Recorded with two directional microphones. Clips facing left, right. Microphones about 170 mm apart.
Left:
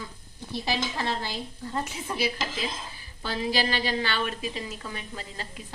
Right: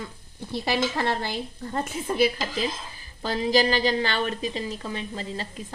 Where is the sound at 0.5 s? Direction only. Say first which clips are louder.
Right 4 dB; 60° right (ahead or behind); by 5.5 s 30° right (ahead or behind).